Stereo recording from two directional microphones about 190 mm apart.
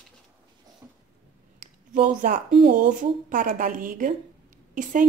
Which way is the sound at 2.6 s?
45° right (ahead or behind).